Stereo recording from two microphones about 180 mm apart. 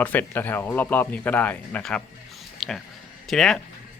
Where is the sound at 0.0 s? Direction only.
10° left (ahead or behind).